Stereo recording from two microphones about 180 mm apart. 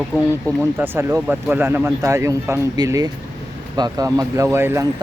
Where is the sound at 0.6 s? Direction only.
15° right (ahead or behind).